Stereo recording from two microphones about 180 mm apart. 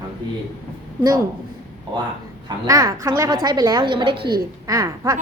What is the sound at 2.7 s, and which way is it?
A woman's voice, 20° right (ahead or behind).